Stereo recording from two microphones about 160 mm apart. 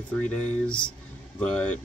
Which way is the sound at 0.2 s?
5° left (ahead or behind).